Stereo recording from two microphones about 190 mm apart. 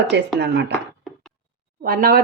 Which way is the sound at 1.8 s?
50° right (ahead or behind).